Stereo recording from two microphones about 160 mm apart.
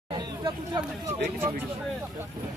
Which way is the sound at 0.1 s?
30° right (ahead or behind).